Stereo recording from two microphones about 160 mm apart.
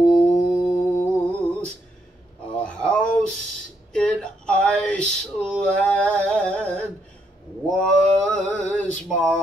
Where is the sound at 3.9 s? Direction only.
5° left (ahead or behind).